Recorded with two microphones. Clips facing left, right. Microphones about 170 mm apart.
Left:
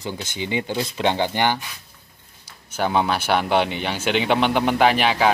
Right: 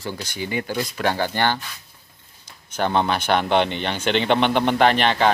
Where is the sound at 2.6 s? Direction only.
10° left (ahead or behind).